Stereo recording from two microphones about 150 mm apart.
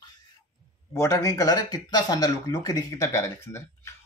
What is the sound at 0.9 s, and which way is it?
Speech, 20° left (ahead or behind).